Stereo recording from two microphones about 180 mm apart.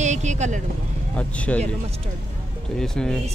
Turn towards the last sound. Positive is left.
turn(degrees=5)  # may be behind; listen again after turning